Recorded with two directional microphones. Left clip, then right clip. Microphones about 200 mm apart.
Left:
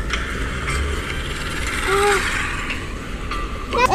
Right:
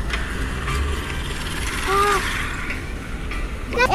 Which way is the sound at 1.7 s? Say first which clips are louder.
Left 1 dB; 15° left (ahead or behind).